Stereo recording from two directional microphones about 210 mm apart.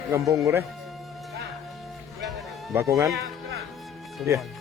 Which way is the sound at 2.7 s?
15° right (ahead or behind).